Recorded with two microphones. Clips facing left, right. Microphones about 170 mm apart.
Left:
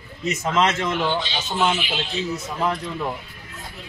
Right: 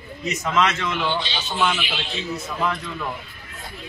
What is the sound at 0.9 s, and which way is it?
A man's voice, 45° left (ahead or behind).